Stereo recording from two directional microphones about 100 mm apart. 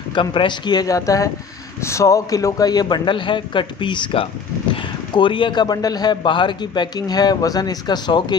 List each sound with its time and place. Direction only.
0.1 s a man's voice: 55° left (ahead or behind)